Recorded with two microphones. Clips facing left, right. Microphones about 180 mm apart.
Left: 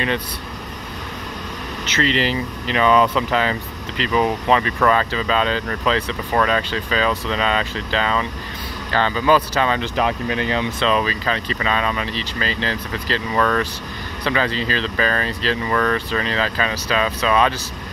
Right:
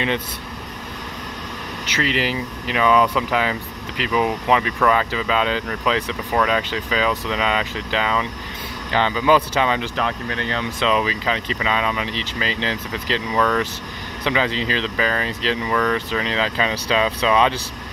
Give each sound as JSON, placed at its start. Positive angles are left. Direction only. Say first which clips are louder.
{"t": 2.0, "sound": "speech", "louder": "left 2 dB", "side_deg": -10}
{"t": 9.9, "sound": "speech", "louder": "left 4 dB", "side_deg": 10}
{"t": 10.8, "sound": "speech", "louder": "right 3 dB", "side_deg": -15}